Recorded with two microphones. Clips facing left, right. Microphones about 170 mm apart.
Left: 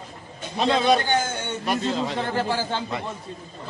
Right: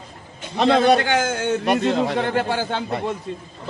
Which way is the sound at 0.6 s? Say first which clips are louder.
Right 4 dB; 65° right (ahead or behind).